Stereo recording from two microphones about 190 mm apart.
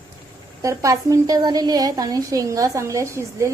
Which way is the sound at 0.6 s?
15° right (ahead or behind).